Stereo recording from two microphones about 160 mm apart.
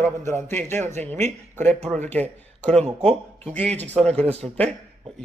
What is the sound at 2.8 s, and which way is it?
Speech, 40° right (ahead or behind).